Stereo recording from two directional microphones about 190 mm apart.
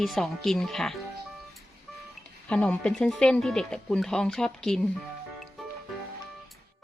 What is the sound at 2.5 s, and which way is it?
Speech, 5° left (ahead or behind).